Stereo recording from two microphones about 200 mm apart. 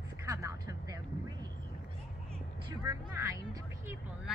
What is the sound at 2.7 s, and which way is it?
Music, 15° right (ahead or behind).